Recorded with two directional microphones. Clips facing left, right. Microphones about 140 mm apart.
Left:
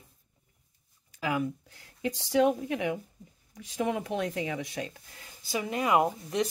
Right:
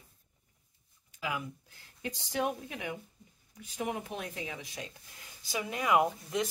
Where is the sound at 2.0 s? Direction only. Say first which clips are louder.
Left 9 dB; 90° left; by 4.9 s 70° left (ahead or behind).